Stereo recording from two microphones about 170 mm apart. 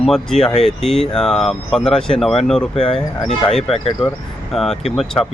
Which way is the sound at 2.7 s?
30° left (ahead or behind).